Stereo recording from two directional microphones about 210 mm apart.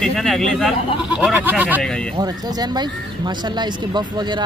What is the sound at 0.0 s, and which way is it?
Speech, centre (ahead or behind).